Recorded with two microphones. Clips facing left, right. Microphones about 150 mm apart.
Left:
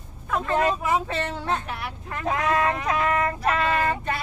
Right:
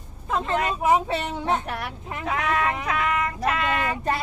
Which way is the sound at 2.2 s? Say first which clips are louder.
Left 2 dB; 35° left (ahead or behind).